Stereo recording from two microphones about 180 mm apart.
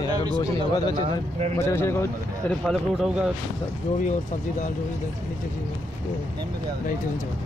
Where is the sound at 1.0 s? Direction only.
35° right (ahead or behind).